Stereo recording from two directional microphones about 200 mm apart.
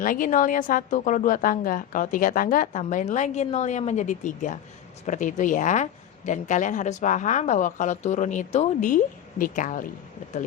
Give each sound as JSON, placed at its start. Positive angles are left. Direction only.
{"t": 0.0, "sound": "a woman's voice", "side_deg": 40}